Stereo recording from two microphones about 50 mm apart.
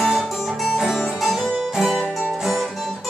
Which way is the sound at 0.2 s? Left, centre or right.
Centre.